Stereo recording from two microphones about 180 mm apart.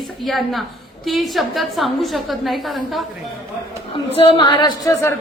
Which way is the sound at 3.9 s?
30° left (ahead or behind).